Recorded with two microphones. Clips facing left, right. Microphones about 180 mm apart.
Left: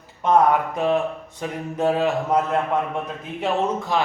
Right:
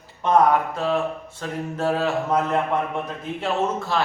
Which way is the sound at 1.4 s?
15° left (ahead or behind).